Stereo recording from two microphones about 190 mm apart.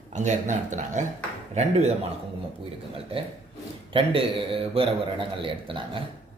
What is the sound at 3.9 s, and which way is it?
A man's voice, 30° right (ahead or behind).